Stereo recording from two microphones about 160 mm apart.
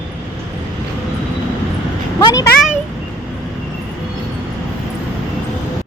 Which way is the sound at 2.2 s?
25° left (ahead or behind).